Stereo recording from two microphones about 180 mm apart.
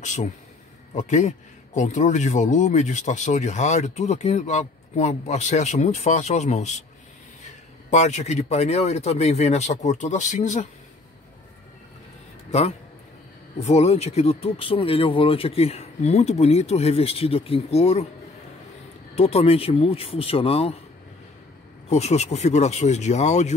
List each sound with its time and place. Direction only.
0.0 s a man's voice: 45° left (ahead or behind)
12.4 s a man's voice: 35° left (ahead or behind)
19.1 s a man's voice: 35° left (ahead or behind)
21.8 s a man's voice: 35° left (ahead or behind)